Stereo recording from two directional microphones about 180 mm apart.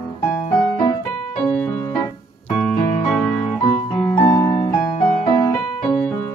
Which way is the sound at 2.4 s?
10° left (ahead or behind).